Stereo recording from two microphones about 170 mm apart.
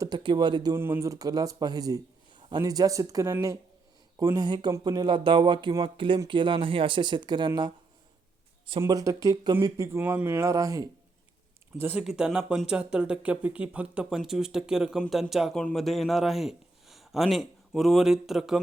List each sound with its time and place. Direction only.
0.0 s speech: 25° right (ahead or behind)
8.8 s speech: 20° right (ahead or behind)
11.8 s speech: 10° right (ahead or behind)